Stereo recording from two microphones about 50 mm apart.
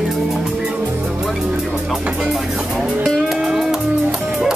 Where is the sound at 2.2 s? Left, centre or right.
Centre.